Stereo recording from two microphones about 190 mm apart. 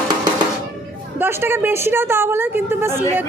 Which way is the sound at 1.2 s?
10° right (ahead or behind).